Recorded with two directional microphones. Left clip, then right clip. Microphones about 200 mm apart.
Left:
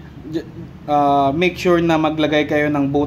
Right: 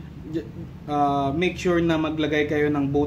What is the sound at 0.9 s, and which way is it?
Speech, 35° left (ahead or behind).